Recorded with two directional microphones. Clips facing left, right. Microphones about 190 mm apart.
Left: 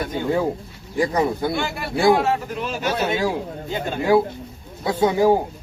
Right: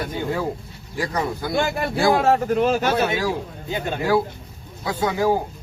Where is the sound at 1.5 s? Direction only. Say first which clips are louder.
Right 2 dB; 45° right (ahead or behind).